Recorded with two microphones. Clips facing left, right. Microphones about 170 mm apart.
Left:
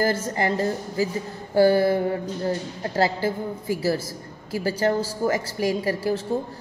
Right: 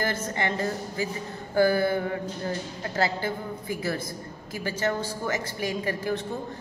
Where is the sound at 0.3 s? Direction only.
35° left (ahead or behind).